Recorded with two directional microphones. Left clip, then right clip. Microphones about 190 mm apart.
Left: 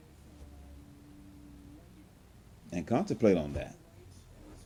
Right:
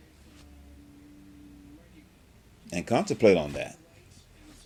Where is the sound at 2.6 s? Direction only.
35° right (ahead or behind).